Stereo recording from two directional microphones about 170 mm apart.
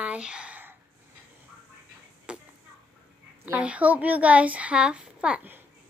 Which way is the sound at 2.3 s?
5° right (ahead or behind).